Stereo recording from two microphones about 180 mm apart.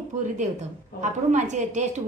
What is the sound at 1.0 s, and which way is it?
Speech, 40° right (ahead or behind).